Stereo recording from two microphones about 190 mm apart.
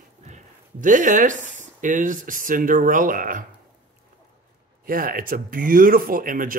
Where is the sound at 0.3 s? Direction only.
40° right (ahead or behind).